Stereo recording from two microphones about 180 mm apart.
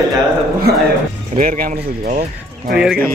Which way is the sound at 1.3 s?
50° right (ahead or behind).